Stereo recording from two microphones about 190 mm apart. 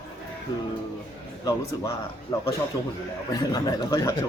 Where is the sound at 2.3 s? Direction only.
20° left (ahead or behind).